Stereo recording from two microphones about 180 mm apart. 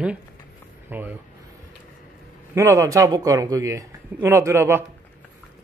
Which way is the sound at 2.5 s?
15° right (ahead or behind).